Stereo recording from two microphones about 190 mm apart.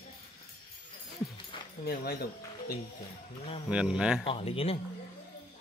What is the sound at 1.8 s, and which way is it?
Speech, 55° left (ahead or behind).